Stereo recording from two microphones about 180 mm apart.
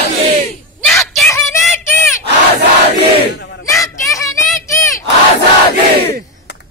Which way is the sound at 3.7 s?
15° left (ahead or behind).